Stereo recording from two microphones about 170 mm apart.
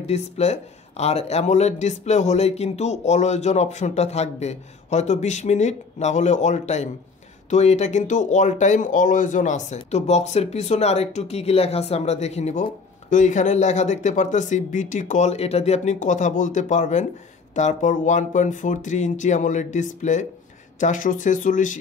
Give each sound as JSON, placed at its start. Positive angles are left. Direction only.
{"t": 0.0, "sound": "speech", "side_deg": 40}